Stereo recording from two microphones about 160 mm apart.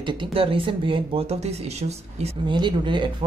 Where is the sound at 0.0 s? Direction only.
30° right (ahead or behind).